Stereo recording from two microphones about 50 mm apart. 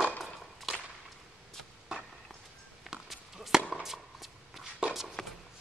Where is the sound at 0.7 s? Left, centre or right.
Centre.